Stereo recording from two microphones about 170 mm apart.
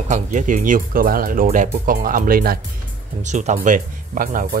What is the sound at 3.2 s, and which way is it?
Speech, 45° right (ahead or behind).